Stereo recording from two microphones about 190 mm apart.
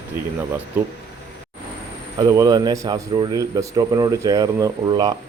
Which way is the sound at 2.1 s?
20° right (ahead or behind).